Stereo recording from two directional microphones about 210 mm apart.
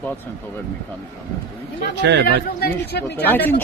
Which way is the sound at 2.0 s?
55° right (ahead or behind).